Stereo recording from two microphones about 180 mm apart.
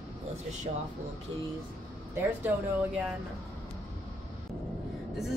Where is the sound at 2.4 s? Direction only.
10° right (ahead or behind).